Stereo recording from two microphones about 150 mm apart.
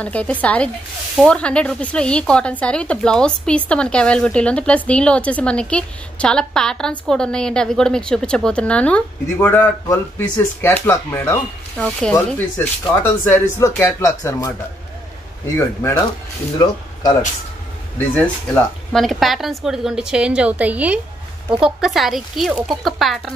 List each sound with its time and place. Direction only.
0.0 s speech: 10° left (ahead or behind)
11.8 s speech: 5° left (ahead or behind); by 14.5 s 20° left (ahead or behind)
15.5 s speech: 20° left (ahead or behind)
17.9 s a woman's voice: 10° left (ahead or behind)